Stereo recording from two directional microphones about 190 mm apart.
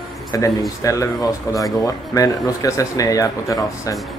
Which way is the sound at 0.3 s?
15° left (ahead or behind).